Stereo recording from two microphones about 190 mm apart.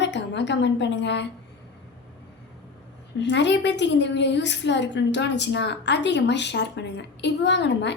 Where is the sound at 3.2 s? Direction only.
65° left (ahead or behind).